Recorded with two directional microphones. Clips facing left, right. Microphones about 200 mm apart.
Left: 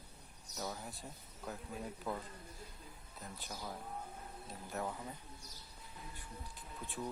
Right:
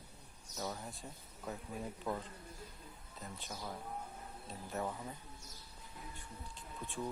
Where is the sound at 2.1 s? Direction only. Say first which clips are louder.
Right 3 dB; centre (ahead or behind).